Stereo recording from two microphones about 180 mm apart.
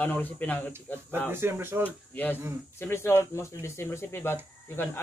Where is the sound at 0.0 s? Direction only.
10° left (ahead or behind).